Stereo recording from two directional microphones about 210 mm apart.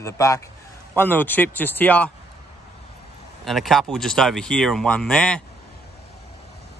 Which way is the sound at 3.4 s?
Centre (ahead or behind).